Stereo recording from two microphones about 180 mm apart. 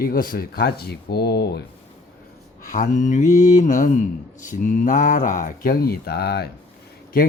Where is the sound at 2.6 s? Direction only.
45° left (ahead or behind).